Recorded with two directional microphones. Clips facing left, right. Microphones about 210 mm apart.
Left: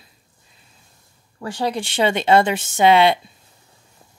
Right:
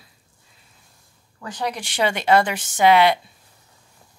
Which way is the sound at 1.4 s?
30° left (ahead or behind).